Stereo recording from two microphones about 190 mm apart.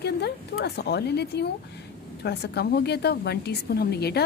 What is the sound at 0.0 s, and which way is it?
A woman's voice, 60° left (ahead or behind).